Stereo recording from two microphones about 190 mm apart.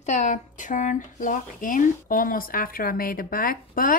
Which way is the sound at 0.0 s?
40° left (ahead or behind).